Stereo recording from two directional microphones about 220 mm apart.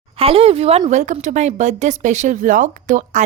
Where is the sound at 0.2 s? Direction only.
25° right (ahead or behind).